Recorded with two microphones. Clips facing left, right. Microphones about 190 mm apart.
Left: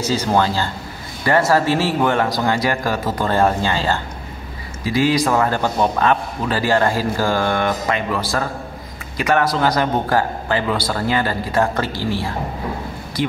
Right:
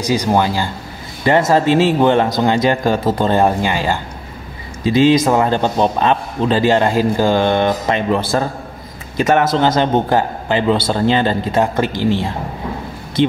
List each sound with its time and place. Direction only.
0.0 s a man's voice: 15° right (ahead or behind)